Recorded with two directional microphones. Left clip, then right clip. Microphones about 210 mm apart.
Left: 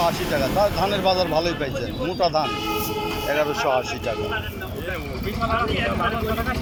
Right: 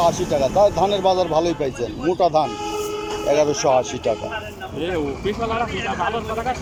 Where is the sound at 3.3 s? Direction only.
10° right (ahead or behind).